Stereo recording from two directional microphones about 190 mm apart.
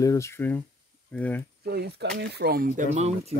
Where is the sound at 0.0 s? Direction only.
15° left (ahead or behind).